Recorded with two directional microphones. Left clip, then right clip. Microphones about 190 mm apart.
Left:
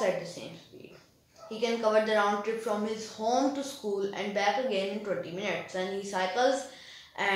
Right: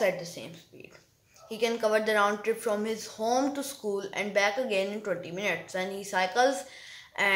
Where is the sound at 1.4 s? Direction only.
20° right (ahead or behind).